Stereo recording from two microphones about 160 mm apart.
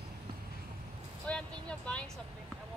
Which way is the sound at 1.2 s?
5° left (ahead or behind).